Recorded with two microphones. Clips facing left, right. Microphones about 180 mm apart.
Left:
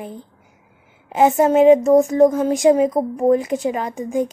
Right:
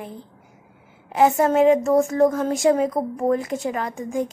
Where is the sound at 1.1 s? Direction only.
20° left (ahead or behind).